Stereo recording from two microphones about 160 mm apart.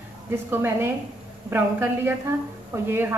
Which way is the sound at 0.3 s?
15° right (ahead or behind).